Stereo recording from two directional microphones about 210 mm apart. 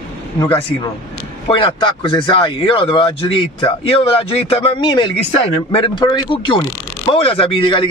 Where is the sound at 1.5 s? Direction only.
25° left (ahead or behind).